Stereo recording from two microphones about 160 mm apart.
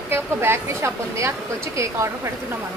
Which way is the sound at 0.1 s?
15° right (ahead or behind).